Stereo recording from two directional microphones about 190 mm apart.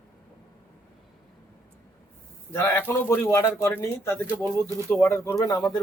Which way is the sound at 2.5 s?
15° left (ahead or behind).